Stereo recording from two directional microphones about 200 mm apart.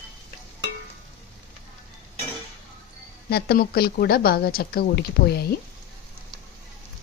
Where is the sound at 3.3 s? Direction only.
50° left (ahead or behind).